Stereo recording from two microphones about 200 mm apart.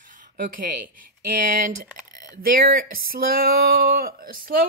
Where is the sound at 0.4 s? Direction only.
45° right (ahead or behind).